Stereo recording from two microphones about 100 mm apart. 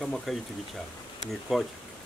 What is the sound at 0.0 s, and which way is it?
Speech, 5° left (ahead or behind).